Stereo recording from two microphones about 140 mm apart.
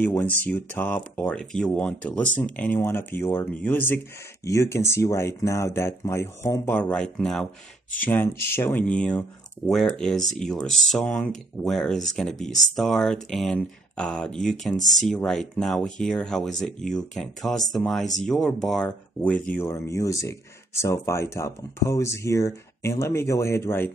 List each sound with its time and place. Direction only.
0.0 s speech: 15° left (ahead or behind)
14.8 s speech: 60° left (ahead or behind)
15.0 s speech: 5° left (ahead or behind)